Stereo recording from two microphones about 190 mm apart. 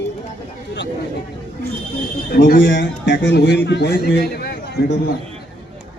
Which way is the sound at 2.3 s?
60° left (ahead or behind).